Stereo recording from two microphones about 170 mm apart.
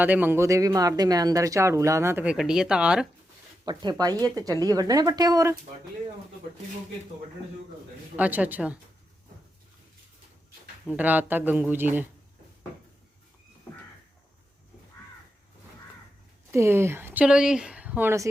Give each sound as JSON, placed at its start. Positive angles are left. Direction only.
{"t": 0.0, "sound": "speech", "side_deg": -10}
{"t": 3.7, "sound": "speech", "side_deg": -25}
{"t": 8.1, "sound": "speech", "side_deg": -10}
{"t": 10.8, "sound": "speech", "side_deg": -10}
{"t": 16.5, "sound": "speech", "side_deg": -15}